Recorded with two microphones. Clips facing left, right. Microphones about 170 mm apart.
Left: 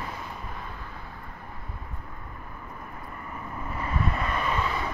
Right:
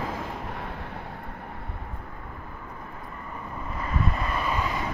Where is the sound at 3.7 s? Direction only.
Centre (ahead or behind).